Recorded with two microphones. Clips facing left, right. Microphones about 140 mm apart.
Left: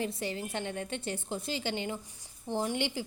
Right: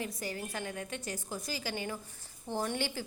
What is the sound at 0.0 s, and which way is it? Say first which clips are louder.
A woman's voice: left 4 dB; 25° left (ahead or behind).